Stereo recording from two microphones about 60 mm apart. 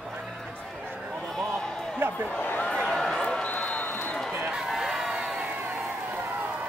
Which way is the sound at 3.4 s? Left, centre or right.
Left.